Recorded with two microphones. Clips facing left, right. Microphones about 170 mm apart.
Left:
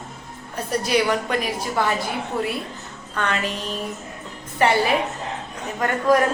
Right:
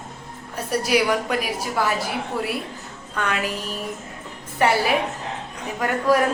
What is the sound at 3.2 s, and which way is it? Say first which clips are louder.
A woman's voice: even; 10° right (ahead or behind).